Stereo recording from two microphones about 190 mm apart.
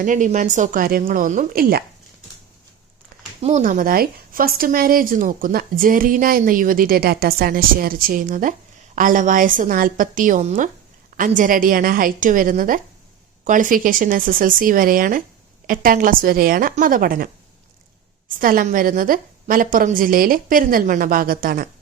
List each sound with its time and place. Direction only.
0.0 s speech: 40° right (ahead or behind)
3.4 s speech: 40° right (ahead or behind)
18.3 s speech: 45° right (ahead or behind)